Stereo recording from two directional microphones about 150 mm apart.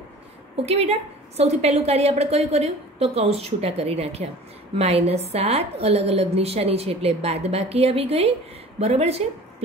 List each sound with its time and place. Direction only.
0.7 s a woman's voice: 45° right (ahead or behind)